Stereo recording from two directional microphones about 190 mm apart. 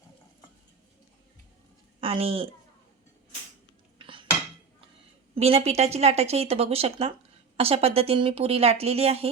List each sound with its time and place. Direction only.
2.0 s a woman's voice: 30° right (ahead or behind)
3.9 s cutlery: 25° right (ahead or behind)
5.3 s a woman's voice: 30° right (ahead or behind)